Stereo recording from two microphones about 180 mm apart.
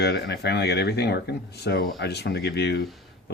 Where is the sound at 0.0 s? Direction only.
65° left (ahead or behind).